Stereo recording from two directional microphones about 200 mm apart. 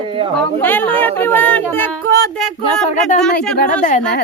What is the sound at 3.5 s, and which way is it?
Speech, 50° left (ahead or behind).